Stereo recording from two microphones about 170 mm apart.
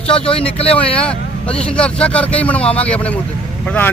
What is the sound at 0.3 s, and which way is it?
Speech, 35° left (ahead or behind).